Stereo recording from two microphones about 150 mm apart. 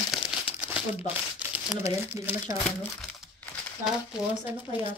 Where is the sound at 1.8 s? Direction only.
20° right (ahead or behind).